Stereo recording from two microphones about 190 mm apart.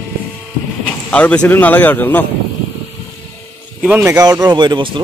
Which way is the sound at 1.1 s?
5° left (ahead or behind).